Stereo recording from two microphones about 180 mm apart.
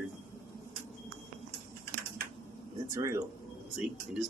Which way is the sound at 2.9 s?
15° right (ahead or behind).